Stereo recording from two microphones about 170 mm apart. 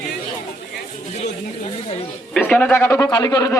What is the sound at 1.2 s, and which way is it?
Speech, 40° left (ahead or behind).